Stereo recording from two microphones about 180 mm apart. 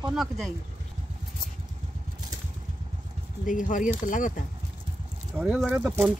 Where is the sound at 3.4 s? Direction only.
45° left (ahead or behind).